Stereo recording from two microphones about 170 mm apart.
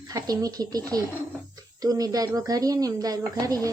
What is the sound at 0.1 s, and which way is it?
Speech, 20° right (ahead or behind).